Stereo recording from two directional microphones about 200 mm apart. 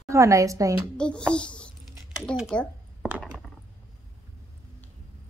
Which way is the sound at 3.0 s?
10° right (ahead or behind).